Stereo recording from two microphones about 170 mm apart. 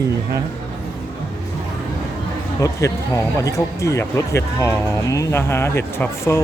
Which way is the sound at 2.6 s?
20° left (ahead or behind).